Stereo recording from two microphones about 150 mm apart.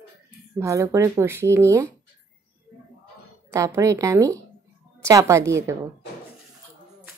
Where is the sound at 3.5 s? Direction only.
20° right (ahead or behind).